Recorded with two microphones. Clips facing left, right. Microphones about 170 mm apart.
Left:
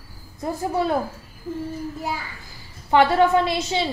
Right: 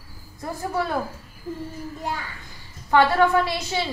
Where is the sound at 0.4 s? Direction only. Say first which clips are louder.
Left 3 dB; 20° left (ahead or behind).